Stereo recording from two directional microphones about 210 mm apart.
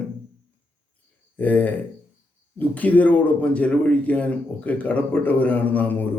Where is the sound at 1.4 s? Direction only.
10° left (ahead or behind).